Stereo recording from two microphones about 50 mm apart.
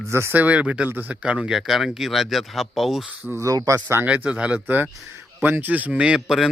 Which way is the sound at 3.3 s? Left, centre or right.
Right.